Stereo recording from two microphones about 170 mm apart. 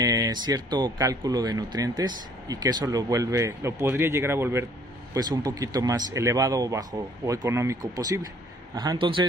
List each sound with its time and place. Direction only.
0.0 s speech: 20° right (ahead or behind)